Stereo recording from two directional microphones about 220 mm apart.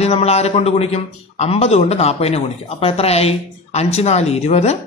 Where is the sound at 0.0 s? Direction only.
30° left (ahead or behind).